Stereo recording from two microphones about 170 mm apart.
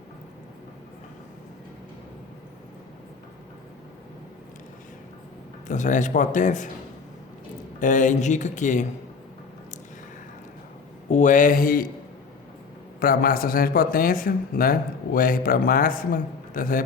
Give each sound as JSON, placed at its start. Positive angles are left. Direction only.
{"t": 5.6, "sound": "speech", "side_deg": 45}
{"t": 7.8, "sound": "speech", "side_deg": 50}
{"t": 11.1, "sound": "speech", "side_deg": 45}
{"t": 13.0, "sound": "a man's voice", "side_deg": 60}